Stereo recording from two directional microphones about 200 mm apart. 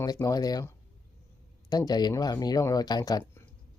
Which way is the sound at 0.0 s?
15° left (ahead or behind).